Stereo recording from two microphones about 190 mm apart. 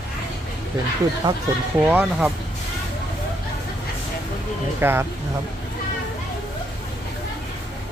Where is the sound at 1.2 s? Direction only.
25° right (ahead or behind).